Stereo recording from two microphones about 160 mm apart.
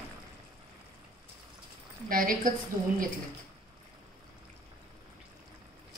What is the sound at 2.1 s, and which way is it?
Speech, 60° right (ahead or behind).